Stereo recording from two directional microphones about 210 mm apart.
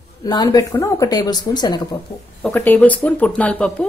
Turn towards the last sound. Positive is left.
turn(degrees=5)  # may be behind; listen again after turning